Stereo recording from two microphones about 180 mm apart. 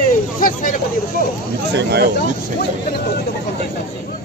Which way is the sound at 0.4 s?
50° left (ahead or behind).